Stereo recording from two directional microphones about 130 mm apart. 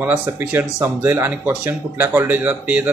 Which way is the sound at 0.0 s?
15° right (ahead or behind).